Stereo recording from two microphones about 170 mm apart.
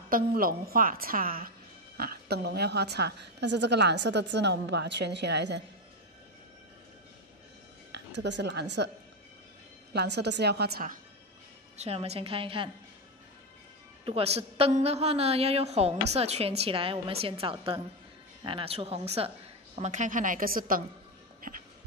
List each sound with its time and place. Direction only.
0.1 s a woman's voice: 55° right (ahead or behind); by 5.6 s 90° right
7.9 s a woman's voice: 90° right
9.9 s a woman's voice: 85° right; by 11.0 s 60° right (ahead or behind)
11.7 s a woman's voice: 40° right (ahead or behind)
14.0 s a woman's voice: 35° right (ahead or behind); by 20.8 s 55° right (ahead or behind)
21.4 s music: 55° right (ahead or behind)